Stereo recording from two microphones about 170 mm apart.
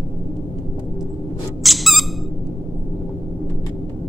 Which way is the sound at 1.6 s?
Centre (ahead or behind).